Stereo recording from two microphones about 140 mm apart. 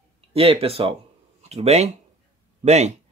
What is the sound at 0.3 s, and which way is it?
A man's voice, 45° right (ahead or behind).